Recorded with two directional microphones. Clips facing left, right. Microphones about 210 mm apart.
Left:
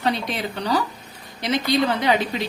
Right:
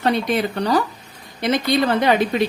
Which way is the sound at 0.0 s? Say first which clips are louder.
Right 5 dB; 50° right (ahead or behind).